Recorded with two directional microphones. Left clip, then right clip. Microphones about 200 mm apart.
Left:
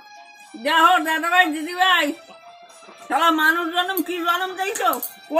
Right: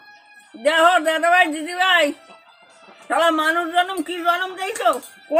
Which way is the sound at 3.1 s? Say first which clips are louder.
Even; 20° right (ahead or behind).